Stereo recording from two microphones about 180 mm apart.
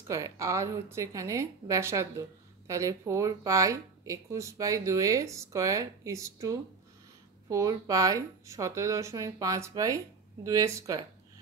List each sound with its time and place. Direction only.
0.1 s speech: 15° right (ahead or behind)